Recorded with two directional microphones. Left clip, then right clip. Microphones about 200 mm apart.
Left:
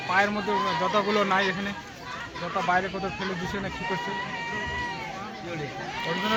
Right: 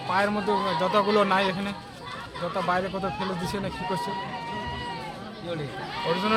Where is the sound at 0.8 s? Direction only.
20° right (ahead or behind).